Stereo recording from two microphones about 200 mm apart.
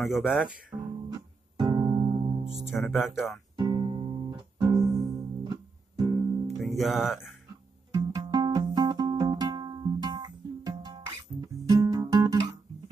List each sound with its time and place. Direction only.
0.0 s speech: 5° right (ahead or behind)
1.1 s music: 20° right (ahead or behind)
2.9 s speech: centre (ahead or behind)
3.5 s music: 20° right (ahead or behind)
6.8 s speech: centre (ahead or behind)
7.9 s music: 20° right (ahead or behind)